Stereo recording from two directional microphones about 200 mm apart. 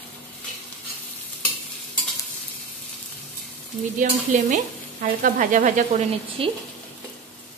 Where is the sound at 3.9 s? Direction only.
35° right (ahead or behind).